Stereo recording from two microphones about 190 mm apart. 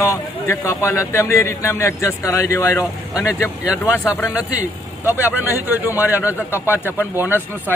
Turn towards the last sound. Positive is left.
turn(degrees=-10)  # may be behind; listen again after turning